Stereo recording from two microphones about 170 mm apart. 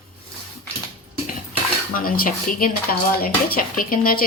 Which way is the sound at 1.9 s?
55° left (ahead or behind).